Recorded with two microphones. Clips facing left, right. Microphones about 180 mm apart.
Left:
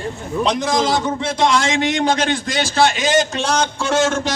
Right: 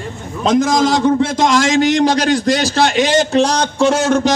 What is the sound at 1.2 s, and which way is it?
A man's voice, 40° right (ahead or behind).